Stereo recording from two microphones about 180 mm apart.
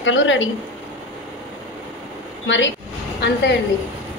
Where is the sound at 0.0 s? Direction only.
90° left.